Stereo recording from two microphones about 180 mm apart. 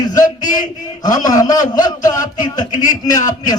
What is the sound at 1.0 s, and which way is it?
A man's voice, 20° left (ahead or behind).